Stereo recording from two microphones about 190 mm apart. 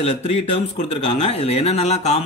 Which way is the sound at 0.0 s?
35° left (ahead or behind).